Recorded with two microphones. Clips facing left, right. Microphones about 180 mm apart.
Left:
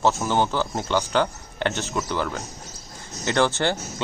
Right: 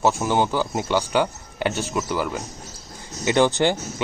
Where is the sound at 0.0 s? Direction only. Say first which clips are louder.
Right 1 dB; 10° right (ahead or behind).